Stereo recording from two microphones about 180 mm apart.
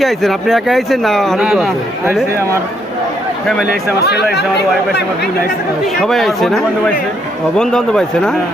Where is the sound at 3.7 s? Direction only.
65° left (ahead or behind).